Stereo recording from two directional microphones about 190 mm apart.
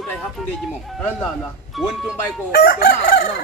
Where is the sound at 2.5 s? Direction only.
45° left (ahead or behind).